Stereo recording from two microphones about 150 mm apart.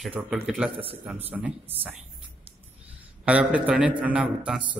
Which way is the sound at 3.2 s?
10° right (ahead or behind).